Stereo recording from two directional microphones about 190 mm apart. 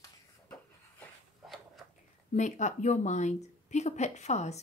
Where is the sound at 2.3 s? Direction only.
40° left (ahead or behind).